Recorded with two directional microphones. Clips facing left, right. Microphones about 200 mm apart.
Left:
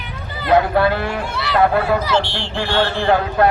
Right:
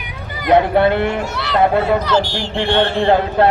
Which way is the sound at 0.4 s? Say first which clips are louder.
Right 2 dB; 20° right (ahead or behind).